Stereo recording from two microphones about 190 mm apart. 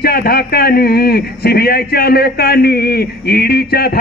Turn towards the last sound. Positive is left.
turn(degrees=55)  # may be behind; listen again after turning